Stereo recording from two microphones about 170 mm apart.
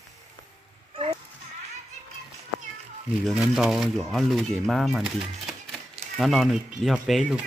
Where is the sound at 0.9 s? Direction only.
30° right (ahead or behind).